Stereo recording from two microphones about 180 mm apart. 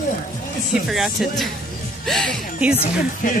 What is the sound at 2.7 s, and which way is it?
Speech, 40° left (ahead or behind).